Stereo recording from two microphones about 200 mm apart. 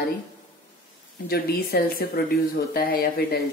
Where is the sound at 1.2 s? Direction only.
50° left (ahead or behind).